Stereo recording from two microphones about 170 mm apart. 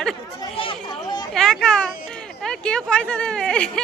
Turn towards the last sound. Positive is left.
turn(degrees=5)  # may be behind; listen again after turning